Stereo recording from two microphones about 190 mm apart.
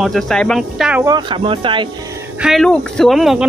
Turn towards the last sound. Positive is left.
turn(degrees=0)  # may be behind; listen again after turning